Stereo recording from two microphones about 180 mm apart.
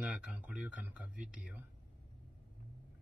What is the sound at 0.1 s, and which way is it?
Speech, 5° right (ahead or behind).